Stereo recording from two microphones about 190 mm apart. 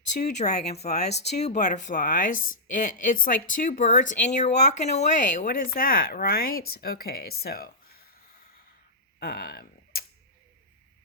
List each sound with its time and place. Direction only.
0.0 s speech: 40° left (ahead or behind)
7.4 s a sound: 55° left (ahead or behind)
9.2 s speech: 55° left (ahead or behind)